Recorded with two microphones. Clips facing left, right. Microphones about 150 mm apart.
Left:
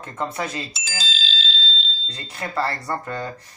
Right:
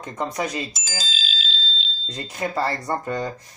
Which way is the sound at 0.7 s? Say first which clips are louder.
Even; 45° right (ahead or behind).